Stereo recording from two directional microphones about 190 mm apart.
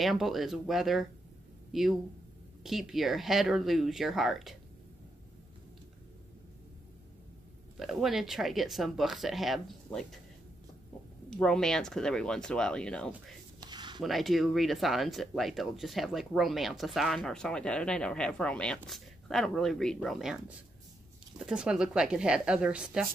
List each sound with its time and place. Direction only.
0.0 s speech: centre (ahead or behind)
7.8 s speech: centre (ahead or behind)
11.2 s speech: 5° left (ahead or behind)
13.6 s a sound: 25° right (ahead or behind)
14.0 s speech: centre (ahead or behind)